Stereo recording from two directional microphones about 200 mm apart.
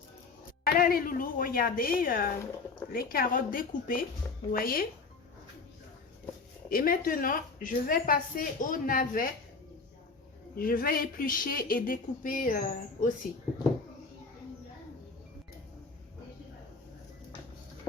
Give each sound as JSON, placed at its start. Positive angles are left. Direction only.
{"t": 0.6, "sound": "a woman's voice", "side_deg": 50}
{"t": 6.7, "sound": "a woman's voice", "side_deg": 45}
{"t": 10.6, "sound": "a woman's voice", "side_deg": 45}